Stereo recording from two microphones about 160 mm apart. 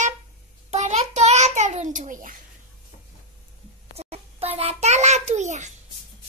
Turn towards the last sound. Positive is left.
turn(degrees=-50)  # may be behind; listen again after turning